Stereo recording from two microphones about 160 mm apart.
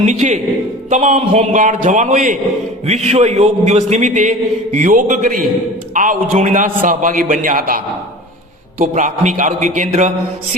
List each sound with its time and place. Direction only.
0.0 s a man's voice: 50° right (ahead or behind)
8.8 s a man's voice: 50° right (ahead or behind)